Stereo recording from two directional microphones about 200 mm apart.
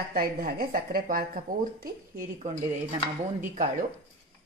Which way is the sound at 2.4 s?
40° right (ahead or behind).